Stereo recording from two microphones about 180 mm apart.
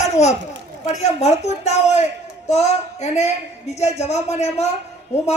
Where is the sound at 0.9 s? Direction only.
40° left (ahead or behind).